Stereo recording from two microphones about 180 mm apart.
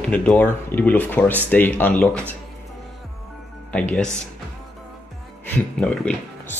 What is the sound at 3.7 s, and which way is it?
Speech, 5° left (ahead or behind).